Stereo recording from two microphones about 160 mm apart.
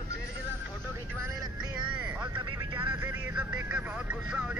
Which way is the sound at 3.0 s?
10° right (ahead or behind).